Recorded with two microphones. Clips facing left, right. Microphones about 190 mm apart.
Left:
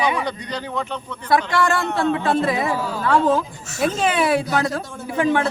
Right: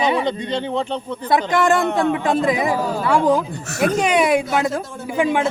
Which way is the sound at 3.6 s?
65° right (ahead or behind).